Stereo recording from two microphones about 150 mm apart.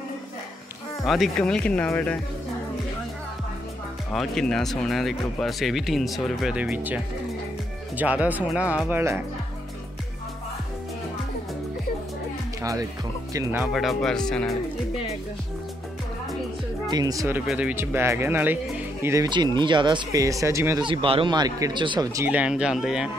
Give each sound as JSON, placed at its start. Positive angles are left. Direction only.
{"t": 1.0, "sound": "speech", "side_deg": 0}
{"t": 4.1, "sound": "speech", "side_deg": 0}
{"t": 8.0, "sound": "speech", "side_deg": -10}
{"t": 8.9, "sound": "speech", "side_deg": -20}
{"t": 13.3, "sound": "speech", "side_deg": -20}
{"t": 13.6, "sound": "speech", "side_deg": 0}
{"t": 16.9, "sound": "speech", "side_deg": -25}
{"t": 17.5, "sound": "speech", "side_deg": -10}
{"t": 19.2, "sound": "speech", "side_deg": -30}
{"t": 20.8, "sound": "speech", "side_deg": -35}
{"t": 22.3, "sound": "speech", "side_deg": -5}